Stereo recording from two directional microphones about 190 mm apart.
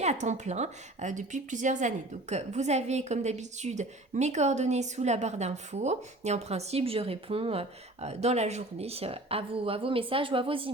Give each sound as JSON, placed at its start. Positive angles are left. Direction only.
{"t": 0.0, "sound": "a woman's voice", "side_deg": -35}